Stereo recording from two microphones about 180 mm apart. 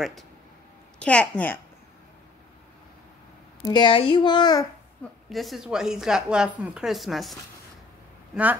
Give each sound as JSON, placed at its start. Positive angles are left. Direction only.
{"t": 0.9, "sound": "a woman's voice", "side_deg": 5}
{"t": 3.6, "sound": "a child's voice", "side_deg": 25}
{"t": 5.3, "sound": "a woman's voice", "side_deg": 0}